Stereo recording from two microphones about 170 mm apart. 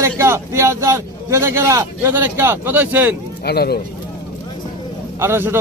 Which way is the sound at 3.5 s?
70° left (ahead or behind).